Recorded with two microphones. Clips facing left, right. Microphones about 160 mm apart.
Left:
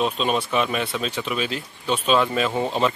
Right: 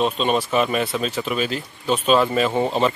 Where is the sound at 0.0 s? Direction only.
Centre (ahead or behind).